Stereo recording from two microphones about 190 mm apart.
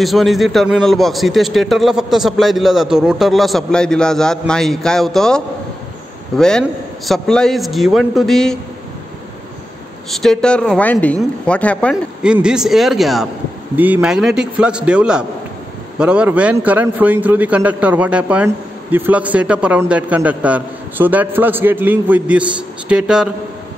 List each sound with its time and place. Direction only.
0.0 s a man's voice: centre (ahead or behind)
10.1 s a man's voice: centre (ahead or behind)
12.2 s a man's voice: 5° right (ahead or behind)